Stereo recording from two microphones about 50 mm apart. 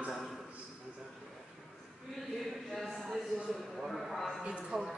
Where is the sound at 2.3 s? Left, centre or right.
Centre.